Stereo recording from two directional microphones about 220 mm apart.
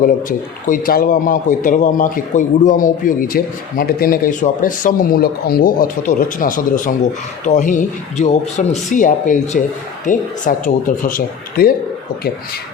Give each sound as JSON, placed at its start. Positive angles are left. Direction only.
{"t": 0.0, "sound": "a man's voice", "side_deg": 40}